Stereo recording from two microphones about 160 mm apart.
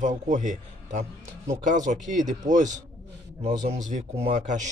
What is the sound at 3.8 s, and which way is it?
Speech, 45° right (ahead or behind).